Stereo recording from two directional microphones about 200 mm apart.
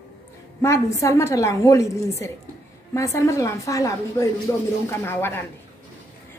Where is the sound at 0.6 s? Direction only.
15° left (ahead or behind).